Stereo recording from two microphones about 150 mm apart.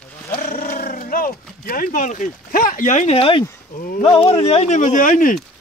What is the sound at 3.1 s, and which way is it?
Speech, 35° left (ahead or behind).